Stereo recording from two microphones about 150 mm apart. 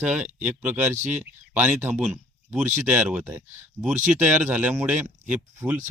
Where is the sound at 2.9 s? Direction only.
10° right (ahead or behind).